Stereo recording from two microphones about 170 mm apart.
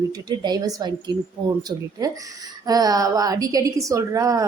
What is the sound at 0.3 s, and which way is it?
Speech, 25° right (ahead or behind).